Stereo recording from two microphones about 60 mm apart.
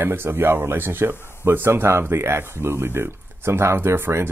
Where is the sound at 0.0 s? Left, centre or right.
Right.